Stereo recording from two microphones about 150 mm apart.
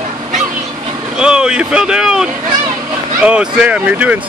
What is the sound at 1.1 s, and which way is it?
Speech, 5° right (ahead or behind).